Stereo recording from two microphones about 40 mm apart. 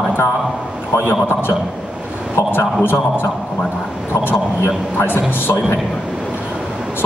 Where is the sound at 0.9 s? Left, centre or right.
Left.